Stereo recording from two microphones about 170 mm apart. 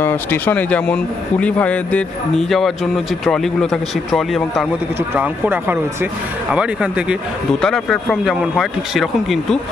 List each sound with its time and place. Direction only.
0.0 s speech: 10° left (ahead or behind)
4.9 s speech: 10° right (ahead or behind)